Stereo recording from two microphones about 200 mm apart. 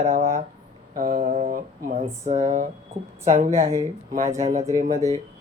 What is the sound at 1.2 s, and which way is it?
Speech, 35° right (ahead or behind).